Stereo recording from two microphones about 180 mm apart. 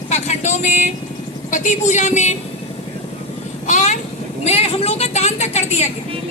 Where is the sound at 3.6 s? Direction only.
40° left (ahead or behind).